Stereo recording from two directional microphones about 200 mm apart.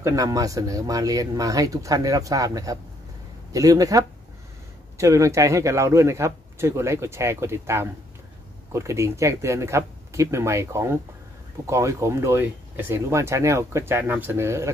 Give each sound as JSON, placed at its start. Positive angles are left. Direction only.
{"t": 0.0, "sound": "speech", "side_deg": -15}